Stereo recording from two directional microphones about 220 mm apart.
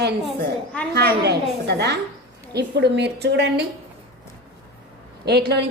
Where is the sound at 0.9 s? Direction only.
50° right (ahead or behind).